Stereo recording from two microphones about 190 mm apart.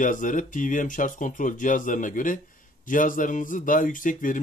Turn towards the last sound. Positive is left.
turn(degrees=45)  # may be behind; listen again after turning